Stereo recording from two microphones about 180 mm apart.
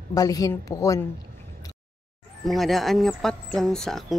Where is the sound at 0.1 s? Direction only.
20° left (ahead or behind).